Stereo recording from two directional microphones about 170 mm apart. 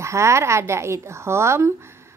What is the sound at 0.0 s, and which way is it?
A child's voice, 15° right (ahead or behind).